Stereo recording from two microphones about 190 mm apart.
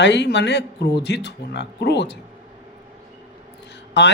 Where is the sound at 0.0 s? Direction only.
65° left (ahead or behind).